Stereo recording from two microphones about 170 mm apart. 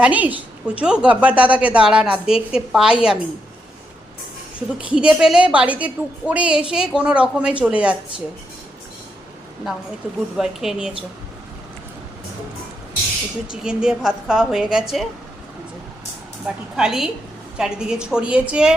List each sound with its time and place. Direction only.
0.0 s a woman's voice: 10° right (ahead or behind)
4.9 s a woman's voice: 5° right (ahead or behind)
10.3 s a woman's voice: centre (ahead or behind)
13.5 s a woman's voice: 5° right (ahead or behind)
16.7 s a woman's voice: 5° right (ahead or behind)